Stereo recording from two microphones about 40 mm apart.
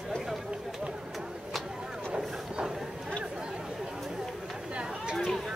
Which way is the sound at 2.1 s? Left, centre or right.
Right.